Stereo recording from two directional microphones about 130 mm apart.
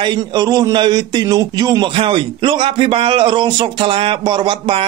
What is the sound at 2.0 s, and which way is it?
A man's voice, 40° right (ahead or behind).